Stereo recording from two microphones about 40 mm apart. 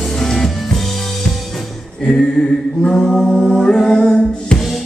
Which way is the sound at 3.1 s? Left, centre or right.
Centre.